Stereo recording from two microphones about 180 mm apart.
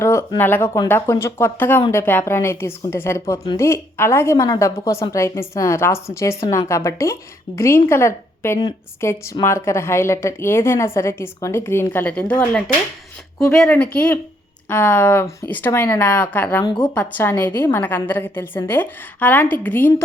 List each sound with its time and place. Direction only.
0.0 s a woman's voice: 15° left (ahead or behind)
16.6 s speech: 25° left (ahead or behind)
16.9 s a woman's voice: 10° left (ahead or behind)